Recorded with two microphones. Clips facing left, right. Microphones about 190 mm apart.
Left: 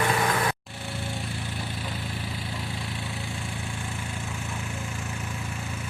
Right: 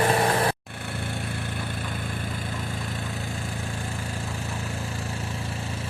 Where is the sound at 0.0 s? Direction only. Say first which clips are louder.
Right 3 dB; 35° right (ahead or behind).